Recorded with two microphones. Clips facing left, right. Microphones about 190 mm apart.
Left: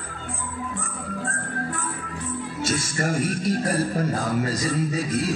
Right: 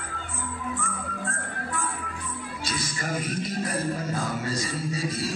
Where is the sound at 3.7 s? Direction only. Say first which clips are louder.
Left 5 dB; 35° left (ahead or behind).